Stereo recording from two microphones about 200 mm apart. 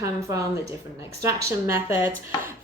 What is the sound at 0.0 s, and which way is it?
Speech, 15° right (ahead or behind).